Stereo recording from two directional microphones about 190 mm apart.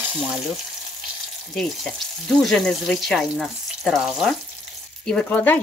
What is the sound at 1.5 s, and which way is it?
Frying, centre (ahead or behind).